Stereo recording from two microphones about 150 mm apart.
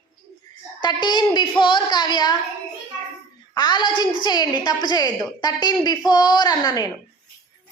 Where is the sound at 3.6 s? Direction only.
30° left (ahead or behind).